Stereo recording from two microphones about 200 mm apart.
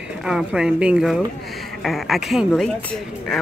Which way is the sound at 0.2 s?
5° right (ahead or behind).